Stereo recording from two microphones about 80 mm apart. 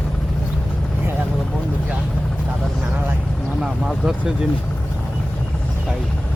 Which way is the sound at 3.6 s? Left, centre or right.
Centre.